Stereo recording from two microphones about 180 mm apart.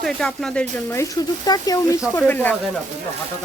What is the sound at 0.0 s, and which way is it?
Speech, 5° left (ahead or behind).